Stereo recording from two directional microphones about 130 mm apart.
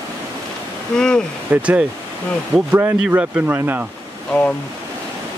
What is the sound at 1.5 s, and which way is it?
Speech, 10° right (ahead or behind).